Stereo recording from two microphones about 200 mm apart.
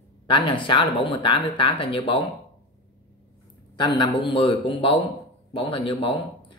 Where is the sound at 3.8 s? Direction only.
20° left (ahead or behind).